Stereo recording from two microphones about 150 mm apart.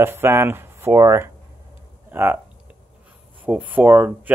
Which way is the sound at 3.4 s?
10° right (ahead or behind).